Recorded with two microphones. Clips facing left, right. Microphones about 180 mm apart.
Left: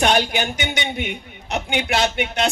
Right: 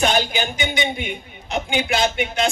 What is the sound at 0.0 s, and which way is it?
A man's voice, 70° left (ahead or behind).